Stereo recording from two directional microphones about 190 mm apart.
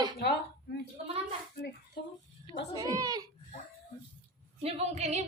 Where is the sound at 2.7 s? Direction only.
20° right (ahead or behind).